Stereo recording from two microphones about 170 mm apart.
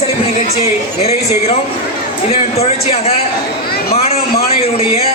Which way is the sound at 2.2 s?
35° left (ahead or behind).